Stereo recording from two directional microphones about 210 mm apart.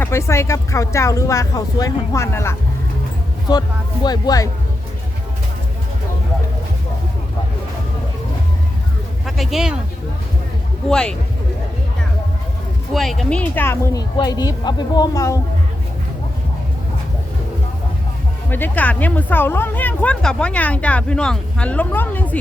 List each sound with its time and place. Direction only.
0.0 s speech: 15° left (ahead or behind)
4.0 s speech: 20° left (ahead or behind)
9.2 s speech: centre (ahead or behind)
10.8 s speech: 5° left (ahead or behind)
12.9 s speech: centre (ahead or behind)
18.5 s speech: 10° left (ahead or behind)